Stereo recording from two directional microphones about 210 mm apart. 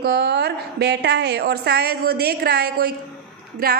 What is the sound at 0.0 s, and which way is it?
A woman's voice, 50° right (ahead or behind).